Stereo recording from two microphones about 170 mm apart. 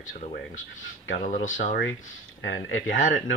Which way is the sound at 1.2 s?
50° left (ahead or behind).